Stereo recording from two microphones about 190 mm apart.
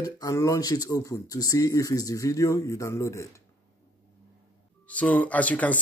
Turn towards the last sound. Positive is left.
turn(degrees=5)  # may be behind; listen again after turning